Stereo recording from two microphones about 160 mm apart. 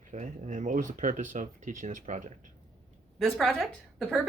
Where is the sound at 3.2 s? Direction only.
Centre (ahead or behind).